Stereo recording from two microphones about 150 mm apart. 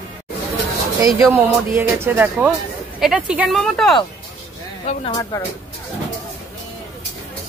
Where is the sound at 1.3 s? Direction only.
15° right (ahead or behind).